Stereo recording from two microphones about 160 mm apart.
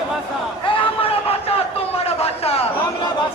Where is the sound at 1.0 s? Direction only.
40° left (ahead or behind).